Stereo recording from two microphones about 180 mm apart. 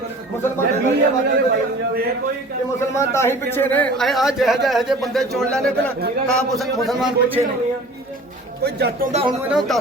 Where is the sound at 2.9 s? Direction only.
15° left (ahead or behind).